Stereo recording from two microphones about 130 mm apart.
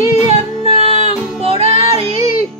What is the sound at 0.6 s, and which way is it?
Music, 50° left (ahead or behind).